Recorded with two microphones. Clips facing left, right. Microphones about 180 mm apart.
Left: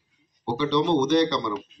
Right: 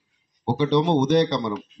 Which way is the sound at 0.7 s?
55° right (ahead or behind).